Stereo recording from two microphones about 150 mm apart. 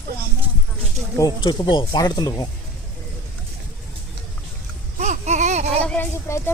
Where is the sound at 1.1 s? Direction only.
25° left (ahead or behind).